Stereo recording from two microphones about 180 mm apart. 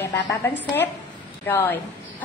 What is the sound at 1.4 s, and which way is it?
Speech, 10° left (ahead or behind).